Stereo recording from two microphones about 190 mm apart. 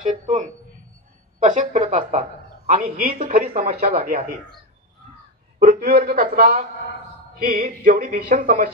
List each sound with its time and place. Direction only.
0.0 s a sound: 40° right (ahead or behind)
1.4 s a woman's voice: 40° right (ahead or behind)
3.6 s speech: 50° right (ahead or behind)
5.6 s speech: 50° right (ahead or behind)